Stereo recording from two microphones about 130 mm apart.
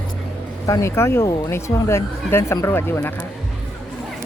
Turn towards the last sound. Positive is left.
turn(degrees=15)  # may be behind; listen again after turning